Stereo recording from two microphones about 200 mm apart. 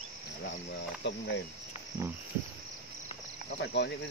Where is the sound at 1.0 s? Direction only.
60° left (ahead or behind).